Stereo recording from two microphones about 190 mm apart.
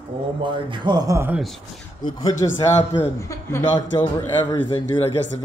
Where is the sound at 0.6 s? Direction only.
20° right (ahead or behind).